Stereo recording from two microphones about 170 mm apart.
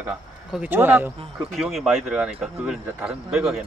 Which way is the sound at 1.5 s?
Centre (ahead or behind).